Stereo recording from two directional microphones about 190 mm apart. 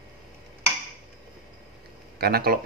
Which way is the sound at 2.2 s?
55° right (ahead or behind).